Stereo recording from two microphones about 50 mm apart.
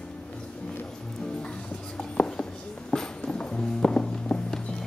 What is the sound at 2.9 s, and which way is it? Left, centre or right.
Music, centre.